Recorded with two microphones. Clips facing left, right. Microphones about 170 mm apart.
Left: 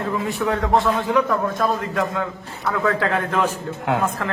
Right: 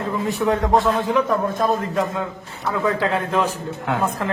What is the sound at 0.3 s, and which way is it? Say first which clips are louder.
A man's voice: right 2 dB; 20° right (ahead or behind).